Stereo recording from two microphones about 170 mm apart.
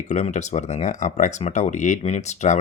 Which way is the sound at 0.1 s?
45° left (ahead or behind).